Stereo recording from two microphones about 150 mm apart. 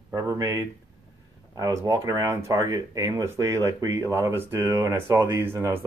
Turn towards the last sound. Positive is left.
turn(degrees=-15)  # may be behind; listen again after turning